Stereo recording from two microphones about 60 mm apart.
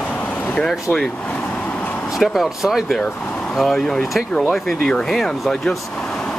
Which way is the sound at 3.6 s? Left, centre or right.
Centre.